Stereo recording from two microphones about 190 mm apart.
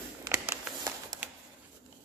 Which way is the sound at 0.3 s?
15° right (ahead or behind).